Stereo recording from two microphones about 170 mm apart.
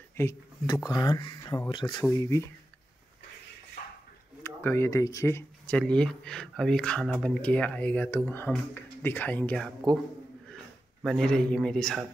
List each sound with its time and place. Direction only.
0.2 s speech: 15° left (ahead or behind)
4.4 s speech: 15° left (ahead or behind)
11.0 s a man's voice: centre (ahead or behind)